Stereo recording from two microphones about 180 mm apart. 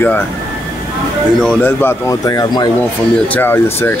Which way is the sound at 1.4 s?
10° left (ahead or behind).